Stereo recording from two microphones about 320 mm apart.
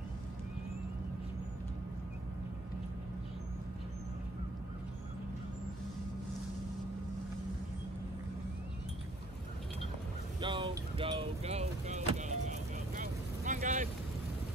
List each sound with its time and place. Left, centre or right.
10.4 s vehicle: centre